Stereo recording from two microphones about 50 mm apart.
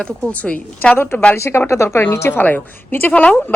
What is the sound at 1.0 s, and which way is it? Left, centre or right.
Speech, left.